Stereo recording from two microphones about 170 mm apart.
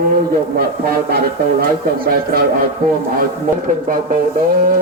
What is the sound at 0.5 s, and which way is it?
A man's voice, 65° right (ahead or behind).